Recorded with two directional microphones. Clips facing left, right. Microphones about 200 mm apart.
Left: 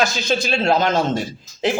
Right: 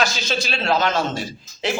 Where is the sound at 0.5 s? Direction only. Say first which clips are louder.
Left 3 dB; 45° left (ahead or behind).